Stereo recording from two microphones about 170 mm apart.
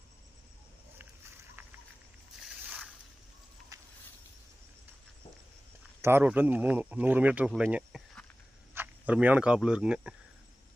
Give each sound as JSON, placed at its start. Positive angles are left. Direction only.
{"t": 0.9, "sound": "vehicle", "side_deg": -10}
{"t": 2.6, "sound": "boat", "side_deg": -5}
{"t": 3.7, "sound": "a sound", "side_deg": -20}
{"t": 6.0, "sound": "speech", "side_deg": -15}